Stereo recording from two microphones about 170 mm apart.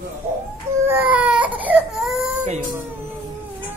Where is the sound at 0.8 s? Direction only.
10° right (ahead or behind).